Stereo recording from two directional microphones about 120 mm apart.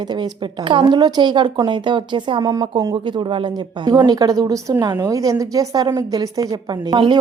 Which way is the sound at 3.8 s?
35° right (ahead or behind).